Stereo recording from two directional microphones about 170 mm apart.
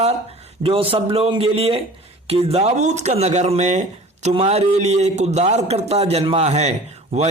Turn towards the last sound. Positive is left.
turn(degrees=-40)  # may be behind; listen again after turning